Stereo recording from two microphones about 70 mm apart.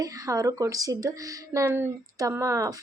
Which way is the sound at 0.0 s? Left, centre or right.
Right.